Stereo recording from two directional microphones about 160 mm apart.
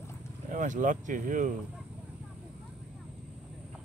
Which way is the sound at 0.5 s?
55° right (ahead or behind).